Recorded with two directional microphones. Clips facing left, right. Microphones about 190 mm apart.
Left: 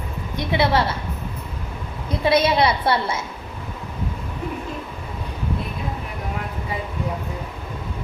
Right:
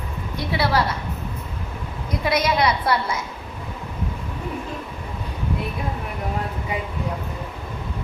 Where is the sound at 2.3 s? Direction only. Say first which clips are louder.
Left 3 dB; 30° left (ahead or behind).